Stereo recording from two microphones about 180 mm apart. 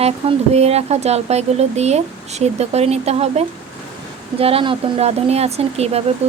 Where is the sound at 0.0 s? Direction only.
35° right (ahead or behind).